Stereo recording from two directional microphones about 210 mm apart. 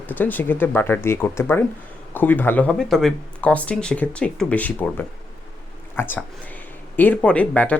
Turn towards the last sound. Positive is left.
turn(degrees=5)  # may be behind; listen again after turning